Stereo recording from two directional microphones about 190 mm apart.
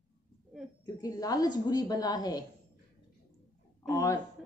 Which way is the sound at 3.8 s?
15° left (ahead or behind).